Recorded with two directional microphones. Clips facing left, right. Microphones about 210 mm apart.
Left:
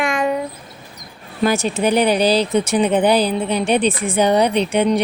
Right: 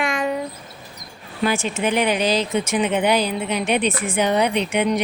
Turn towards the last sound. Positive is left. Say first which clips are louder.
# left 4 dB
turn(degrees=35)  # may be behind; listen again after turning